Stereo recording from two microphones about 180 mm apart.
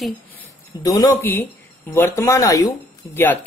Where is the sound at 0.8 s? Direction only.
20° left (ahead or behind).